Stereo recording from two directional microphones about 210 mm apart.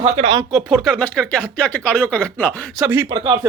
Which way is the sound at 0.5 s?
Centre (ahead or behind).